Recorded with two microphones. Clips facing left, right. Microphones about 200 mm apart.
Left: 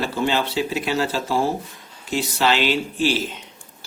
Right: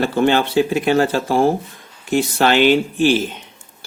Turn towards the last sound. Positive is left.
turn(degrees=-55)  # may be behind; listen again after turning